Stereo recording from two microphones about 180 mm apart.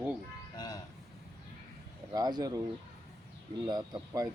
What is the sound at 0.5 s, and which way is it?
Vehicle, 20° left (ahead or behind).